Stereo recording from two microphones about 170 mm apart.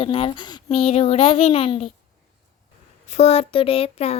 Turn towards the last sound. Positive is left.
turn(degrees=35)  # may be behind; listen again after turning